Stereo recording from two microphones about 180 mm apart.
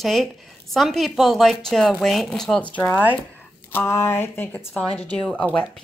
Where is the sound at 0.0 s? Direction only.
Centre (ahead or behind).